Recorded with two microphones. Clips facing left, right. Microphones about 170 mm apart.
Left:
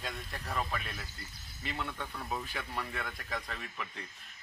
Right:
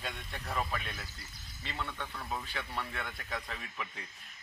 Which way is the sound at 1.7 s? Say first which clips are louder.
Left 1 dB; 10° left (ahead or behind).